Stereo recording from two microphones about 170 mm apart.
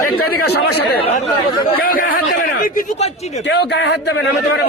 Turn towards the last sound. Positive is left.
turn(degrees=85)